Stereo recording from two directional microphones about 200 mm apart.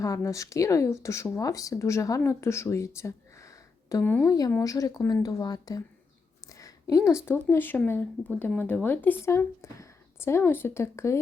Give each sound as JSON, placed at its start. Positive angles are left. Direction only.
{"t": 0.0, "sound": "speech", "side_deg": 15}
{"t": 6.5, "sound": "a sound", "side_deg": 15}
{"t": 7.3, "sound": "speech", "side_deg": 10}